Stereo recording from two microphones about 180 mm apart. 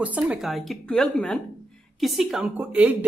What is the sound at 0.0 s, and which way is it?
A woman's voice, 10° right (ahead or behind).